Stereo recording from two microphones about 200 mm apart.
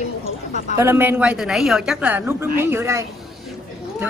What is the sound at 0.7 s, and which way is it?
A woman's voice, 10° right (ahead or behind).